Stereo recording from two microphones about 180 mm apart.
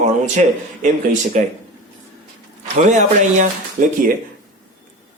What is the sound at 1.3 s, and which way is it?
Speech, 40° right (ahead or behind).